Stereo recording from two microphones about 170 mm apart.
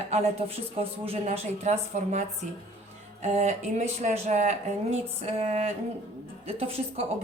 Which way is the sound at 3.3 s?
40° right (ahead or behind).